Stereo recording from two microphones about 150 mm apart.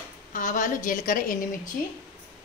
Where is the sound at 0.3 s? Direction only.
60° left (ahead or behind).